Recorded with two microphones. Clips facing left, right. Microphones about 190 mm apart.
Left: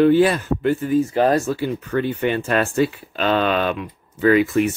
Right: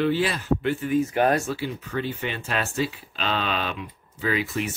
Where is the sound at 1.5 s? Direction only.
50° left (ahead or behind).